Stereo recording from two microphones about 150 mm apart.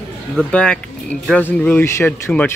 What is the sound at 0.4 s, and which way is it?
Speech, 5° left (ahead or behind).